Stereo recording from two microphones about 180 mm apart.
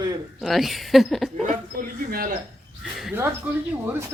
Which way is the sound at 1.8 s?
55° right (ahead or behind).